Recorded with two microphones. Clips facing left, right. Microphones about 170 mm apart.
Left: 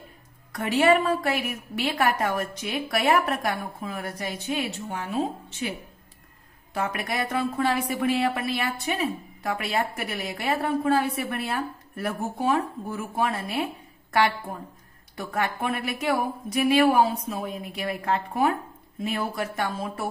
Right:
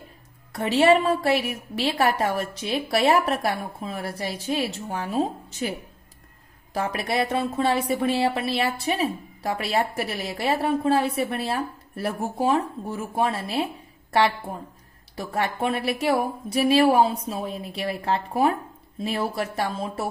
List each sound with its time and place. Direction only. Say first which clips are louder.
0.5 s a woman's voice: right 2 dB; 30° right (ahead or behind)
15.1 s a woman's voice: right 2 dB; 25° right (ahead or behind)